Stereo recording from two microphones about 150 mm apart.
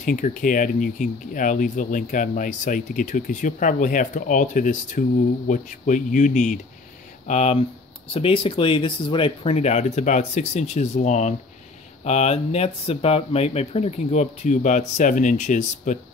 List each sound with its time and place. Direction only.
0.0 s speech: 60° left (ahead or behind)
8.1 s speech: 40° left (ahead or behind); by 16.0 s 55° left (ahead or behind)